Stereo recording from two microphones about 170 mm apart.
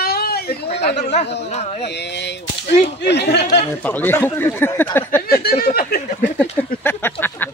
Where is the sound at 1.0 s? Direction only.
40° left (ahead or behind).